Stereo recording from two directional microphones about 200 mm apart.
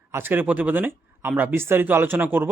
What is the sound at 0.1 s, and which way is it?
Speech, 10° right (ahead or behind).